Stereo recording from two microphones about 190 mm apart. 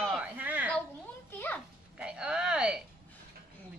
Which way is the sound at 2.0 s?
5° right (ahead or behind).